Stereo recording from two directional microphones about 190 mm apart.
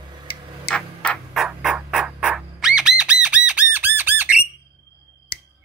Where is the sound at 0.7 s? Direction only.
5° left (ahead or behind).